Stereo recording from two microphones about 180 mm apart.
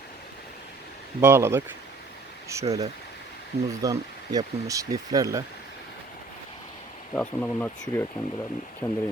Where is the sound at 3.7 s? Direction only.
20° right (ahead or behind).